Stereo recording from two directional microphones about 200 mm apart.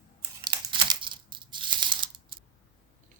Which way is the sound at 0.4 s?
25° right (ahead or behind).